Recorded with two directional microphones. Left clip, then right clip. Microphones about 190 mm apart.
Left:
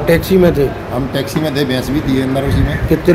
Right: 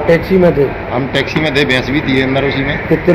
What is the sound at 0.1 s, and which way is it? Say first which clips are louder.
A man's voice: right 1 dB; 25° left (ahead or behind).